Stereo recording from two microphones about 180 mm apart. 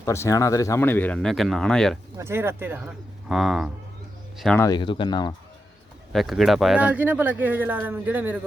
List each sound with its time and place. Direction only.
0.0 s speech: 15° left (ahead or behind)
2.1 s speech: 15° right (ahead or behind); by 4.6 s 5° left (ahead or behind)
4.6 s speech: 25° left (ahead or behind)
6.1 s speech: centre (ahead or behind)